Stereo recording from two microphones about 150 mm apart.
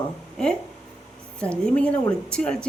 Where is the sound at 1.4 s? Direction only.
10° left (ahead or behind).